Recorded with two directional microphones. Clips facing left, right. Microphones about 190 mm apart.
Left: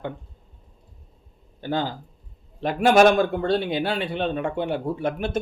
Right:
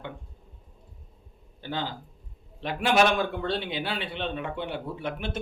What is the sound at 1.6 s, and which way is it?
A man's voice, 45° left (ahead or behind).